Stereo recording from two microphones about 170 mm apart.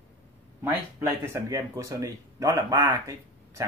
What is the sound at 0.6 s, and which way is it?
Speech, 15° right (ahead or behind).